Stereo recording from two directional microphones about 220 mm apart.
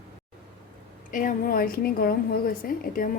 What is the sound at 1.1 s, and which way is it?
A woman's voice, 40° left (ahead or behind).